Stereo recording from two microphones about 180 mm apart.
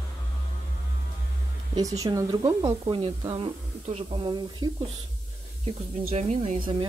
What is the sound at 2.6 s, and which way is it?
Speech, 30° right (ahead or behind).